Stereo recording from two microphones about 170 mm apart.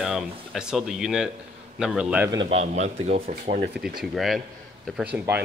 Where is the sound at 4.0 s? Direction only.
Centre (ahead or behind).